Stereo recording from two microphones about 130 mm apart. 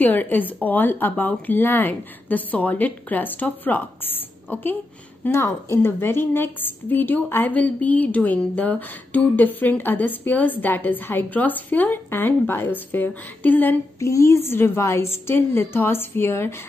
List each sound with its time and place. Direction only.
0.0 s a woman's voice: 15° left (ahead or behind)